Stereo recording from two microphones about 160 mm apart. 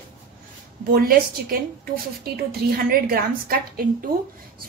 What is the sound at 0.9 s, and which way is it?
Speech, 65° right (ahead or behind).